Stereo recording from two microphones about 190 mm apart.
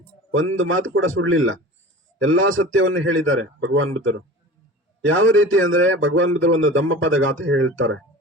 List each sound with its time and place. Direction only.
0.3 s a man's voice: 90° right